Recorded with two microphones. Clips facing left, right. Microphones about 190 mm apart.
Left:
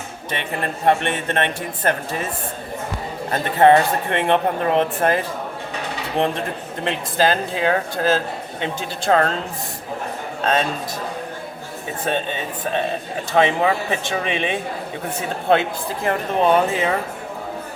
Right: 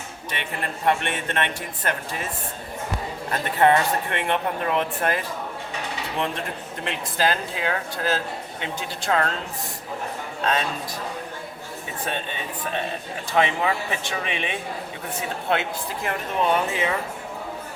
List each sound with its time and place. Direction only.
0.3 s speech: 30° left (ahead or behind)
3.3 s speech: 30° left (ahead or behind)
6.1 s speech: 30° left (ahead or behind)
10.4 s a man's voice: 25° left (ahead or behind)
12.0 s speech: 30° left (ahead or behind)
16.0 s speech: 35° left (ahead or behind)